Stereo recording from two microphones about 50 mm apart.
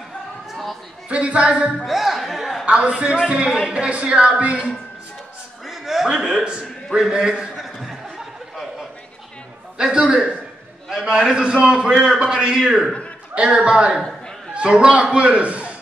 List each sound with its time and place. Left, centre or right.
1.0 s a man's voice: right
1.9 s speech: centre
2.6 s a man's voice: right
3.8 s a man's voice: centre
5.7 s a sound: centre
7.0 s a man's voice: centre
7.5 s a sound: centre
9.9 s a man's voice: right
11.3 s a man's voice: centre
13.3 s a man's voice: right